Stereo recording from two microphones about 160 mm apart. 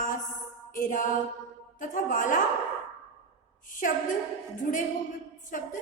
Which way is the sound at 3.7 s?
55° left (ahead or behind).